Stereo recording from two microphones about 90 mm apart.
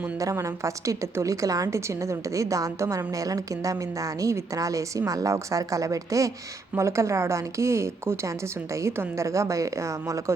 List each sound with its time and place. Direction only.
0.2 s a woman's voice: 35° right (ahead or behind)